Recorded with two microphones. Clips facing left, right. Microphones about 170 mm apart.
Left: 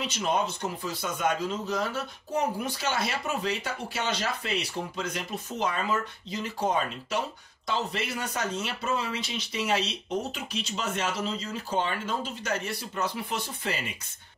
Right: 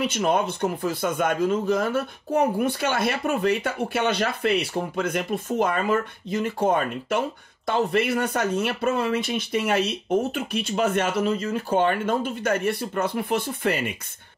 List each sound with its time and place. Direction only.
0.0 s a man's voice: 55° right (ahead or behind)